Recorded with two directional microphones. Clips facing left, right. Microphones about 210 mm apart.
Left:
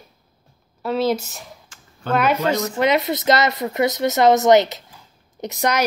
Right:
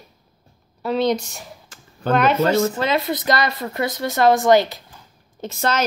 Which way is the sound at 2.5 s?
20° left (ahead or behind).